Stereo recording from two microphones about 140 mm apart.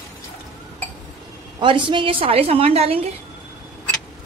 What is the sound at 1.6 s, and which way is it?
A woman's voice, 35° right (ahead or behind).